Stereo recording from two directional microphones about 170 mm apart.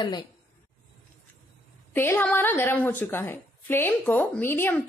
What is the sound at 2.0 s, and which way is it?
A woman's voice, 10° left (ahead or behind).